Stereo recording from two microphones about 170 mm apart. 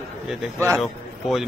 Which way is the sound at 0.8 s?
Centre (ahead or behind).